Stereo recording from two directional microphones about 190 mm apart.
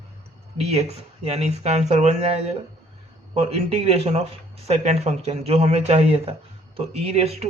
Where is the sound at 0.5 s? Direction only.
30° right (ahead or behind).